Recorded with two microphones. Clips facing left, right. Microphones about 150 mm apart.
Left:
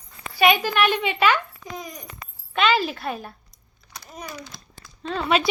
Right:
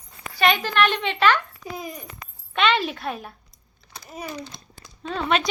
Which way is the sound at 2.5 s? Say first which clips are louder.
Left 1 dB; centre (ahead or behind).